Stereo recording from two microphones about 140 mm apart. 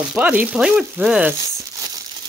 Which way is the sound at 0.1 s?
10° right (ahead or behind).